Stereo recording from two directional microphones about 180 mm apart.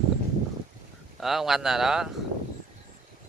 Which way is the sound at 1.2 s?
Centre (ahead or behind).